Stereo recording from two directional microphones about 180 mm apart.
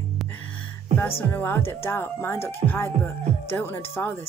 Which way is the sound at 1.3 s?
10° left (ahead or behind).